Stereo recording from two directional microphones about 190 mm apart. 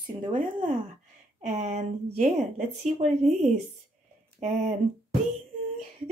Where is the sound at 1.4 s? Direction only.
40° right (ahead or behind).